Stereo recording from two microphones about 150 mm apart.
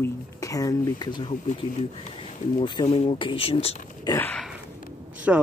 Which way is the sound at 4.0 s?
25° left (ahead or behind).